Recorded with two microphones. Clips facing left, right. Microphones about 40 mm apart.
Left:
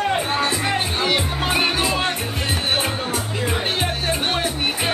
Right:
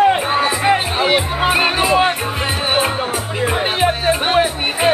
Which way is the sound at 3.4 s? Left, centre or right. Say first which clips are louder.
Right 8 dB; centre.